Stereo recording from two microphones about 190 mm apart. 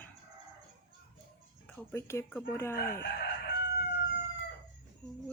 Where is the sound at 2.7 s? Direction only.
50° left (ahead or behind).